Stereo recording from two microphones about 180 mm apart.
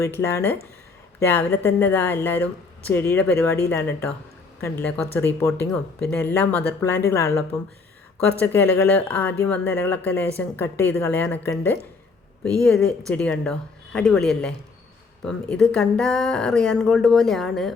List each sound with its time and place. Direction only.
0.0 s speech: 15° left (ahead or behind)
8.5 s speech: 10° left (ahead or behind)
12.6 s speech: 5° left (ahead or behind)